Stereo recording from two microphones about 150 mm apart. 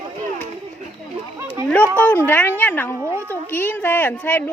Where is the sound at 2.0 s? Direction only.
10° left (ahead or behind).